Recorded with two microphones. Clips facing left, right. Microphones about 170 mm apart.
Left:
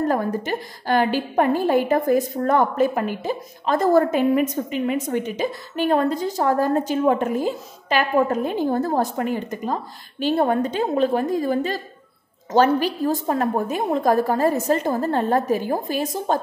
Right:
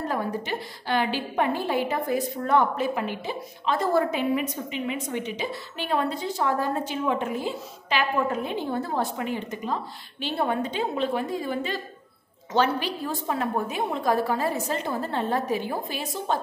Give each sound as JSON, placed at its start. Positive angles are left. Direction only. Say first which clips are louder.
{"t": 0.0, "sound": "a woman's voice", "louder": "left 6 dB", "side_deg": 45}